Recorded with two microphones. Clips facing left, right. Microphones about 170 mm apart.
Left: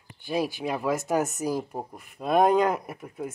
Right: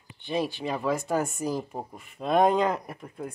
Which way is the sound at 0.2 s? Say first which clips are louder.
Left 1 dB; 5° left (ahead or behind).